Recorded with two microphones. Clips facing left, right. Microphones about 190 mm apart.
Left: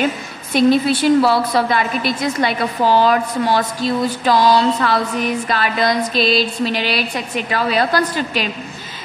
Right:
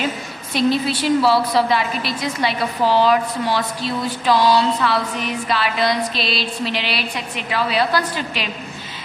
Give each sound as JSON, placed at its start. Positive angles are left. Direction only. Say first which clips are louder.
{"t": 0.6, "sound": "a woman's voice", "louder": "left 5 dB", "side_deg": 50}